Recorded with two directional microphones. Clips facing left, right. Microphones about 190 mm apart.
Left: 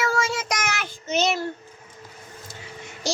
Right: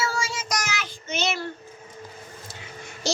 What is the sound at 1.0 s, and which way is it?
Child singing, 40° left (ahead or behind).